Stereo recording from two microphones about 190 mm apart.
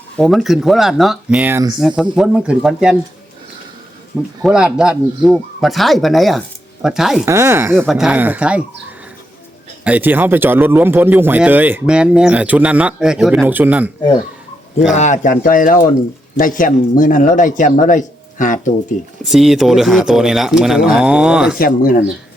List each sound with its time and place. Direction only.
0.2 s speech: centre (ahead or behind); by 1.8 s 15° right (ahead or behind)
2.1 s speech: 5° right (ahead or behind)
4.4 s speech: 5° right (ahead or behind)
7.3 s speech: 15° right (ahead or behind)
7.9 s speech: 5° right (ahead or behind)
9.8 s speech: 10° right (ahead or behind)
14.9 s a man's voice: 40° left (ahead or behind)
19.2 s speech: centre (ahead or behind)
21.6 s a man's voice: 50° left (ahead or behind)